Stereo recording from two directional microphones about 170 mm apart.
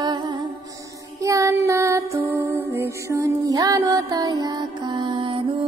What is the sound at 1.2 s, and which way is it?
Music, 20° right (ahead or behind).